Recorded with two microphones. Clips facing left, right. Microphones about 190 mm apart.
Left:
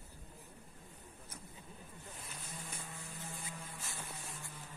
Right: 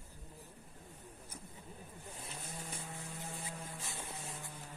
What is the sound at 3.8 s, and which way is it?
Music, 20° right (ahead or behind).